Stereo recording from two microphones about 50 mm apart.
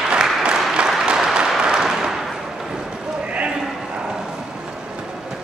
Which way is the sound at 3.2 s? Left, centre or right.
Right.